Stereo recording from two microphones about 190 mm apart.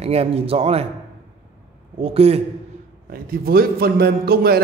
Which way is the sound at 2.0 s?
30° right (ahead or behind).